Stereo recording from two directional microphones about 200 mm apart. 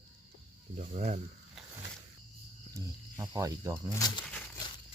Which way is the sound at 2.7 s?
15° right (ahead or behind).